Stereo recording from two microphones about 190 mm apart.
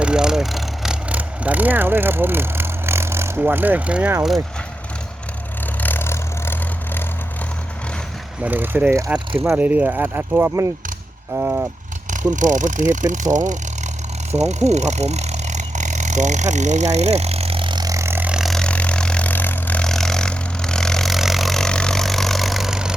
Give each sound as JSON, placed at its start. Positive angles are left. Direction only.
{"t": 0.0, "sound": "speech", "side_deg": -5}
{"t": 5.8, "sound": "vehicle", "side_deg": 10}
{"t": 8.4, "sound": "pulleys", "side_deg": -10}
{"t": 12.1, "sound": "speech", "side_deg": -40}
{"t": 14.3, "sound": "vehicle", "side_deg": -35}